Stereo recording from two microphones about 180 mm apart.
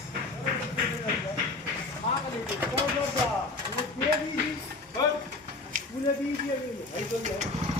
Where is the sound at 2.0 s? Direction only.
35° left (ahead or behind).